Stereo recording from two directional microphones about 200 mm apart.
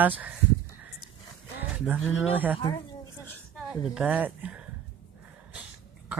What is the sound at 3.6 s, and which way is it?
A woman's voice, 5° right (ahead or behind).